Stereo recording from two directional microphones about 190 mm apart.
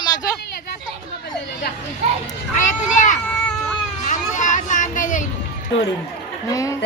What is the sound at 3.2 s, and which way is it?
Baby cry, 5° left (ahead or behind).